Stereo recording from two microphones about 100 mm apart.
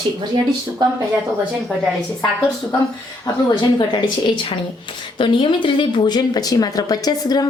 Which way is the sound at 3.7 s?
50° left (ahead or behind).